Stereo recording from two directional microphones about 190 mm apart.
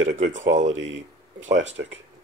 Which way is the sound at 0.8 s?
80° right.